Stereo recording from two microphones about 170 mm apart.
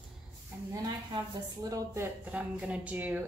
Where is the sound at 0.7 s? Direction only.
25° right (ahead or behind).